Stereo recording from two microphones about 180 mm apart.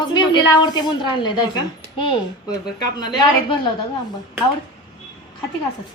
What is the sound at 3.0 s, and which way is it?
Speech, 25° left (ahead or behind).